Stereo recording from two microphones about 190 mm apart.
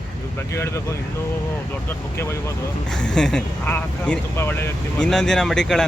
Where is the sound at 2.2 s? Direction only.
15° left (ahead or behind).